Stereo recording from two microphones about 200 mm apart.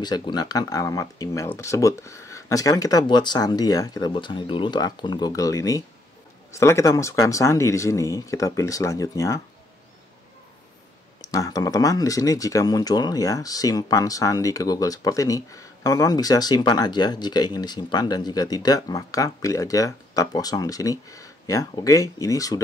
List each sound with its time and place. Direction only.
0.0 s speech: 20° left (ahead or behind)
11.1 s speech: 20° left (ahead or behind)